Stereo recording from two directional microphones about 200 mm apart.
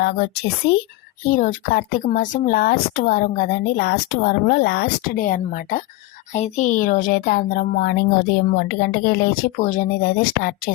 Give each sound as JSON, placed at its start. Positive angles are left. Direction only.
{"t": 0.0, "sound": "speech", "side_deg": 50}
{"t": 1.2, "sound": "speech", "side_deg": 45}